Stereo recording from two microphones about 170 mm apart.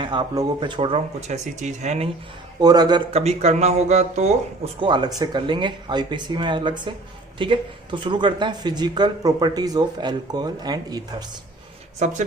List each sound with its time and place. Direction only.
0.0 s speech: 30° right (ahead or behind)
2.6 s speech: 25° right (ahead or behind)
3.1 s speech: 40° right (ahead or behind)
11.9 s speech: 45° right (ahead or behind)